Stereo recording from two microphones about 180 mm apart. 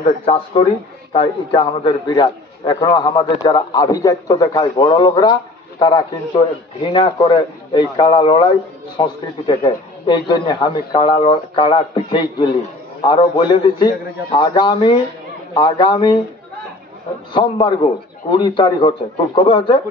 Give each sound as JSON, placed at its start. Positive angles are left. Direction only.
{"t": 0.0, "sound": "a man's voice", "side_deg": 35}
{"t": 17.3, "sound": "a man's voice", "side_deg": 25}